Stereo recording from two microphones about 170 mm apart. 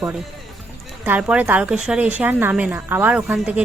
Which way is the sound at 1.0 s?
10° right (ahead or behind).